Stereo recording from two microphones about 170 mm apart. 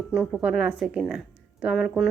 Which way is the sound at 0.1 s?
Centre (ahead or behind).